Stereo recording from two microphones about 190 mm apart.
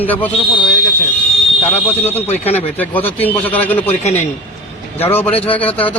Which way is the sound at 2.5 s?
10° left (ahead or behind).